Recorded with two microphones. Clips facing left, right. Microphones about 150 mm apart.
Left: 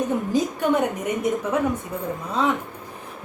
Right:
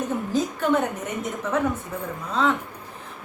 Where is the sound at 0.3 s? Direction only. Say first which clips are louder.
Left 2 dB; 15° left (ahead or behind).